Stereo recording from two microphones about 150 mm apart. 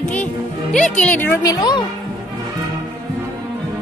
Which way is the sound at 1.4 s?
25° left (ahead or behind).